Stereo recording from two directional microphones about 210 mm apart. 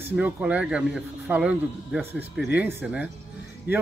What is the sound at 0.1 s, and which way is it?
Speech, 5° right (ahead or behind).